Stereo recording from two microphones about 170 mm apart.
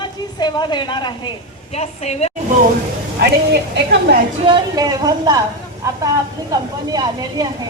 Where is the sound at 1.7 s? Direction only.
40° left (ahead or behind).